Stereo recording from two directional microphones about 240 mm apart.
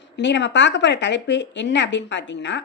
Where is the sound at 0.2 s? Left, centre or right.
Left.